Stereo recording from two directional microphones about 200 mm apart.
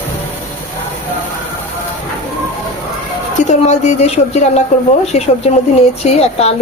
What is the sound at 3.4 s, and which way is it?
Speech, 35° left (ahead or behind).